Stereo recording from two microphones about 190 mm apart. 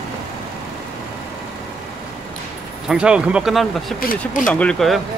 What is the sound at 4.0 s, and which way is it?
Speech, 50° left (ahead or behind).